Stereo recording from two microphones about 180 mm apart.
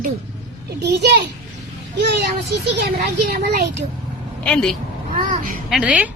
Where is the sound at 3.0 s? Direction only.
60° right (ahead or behind).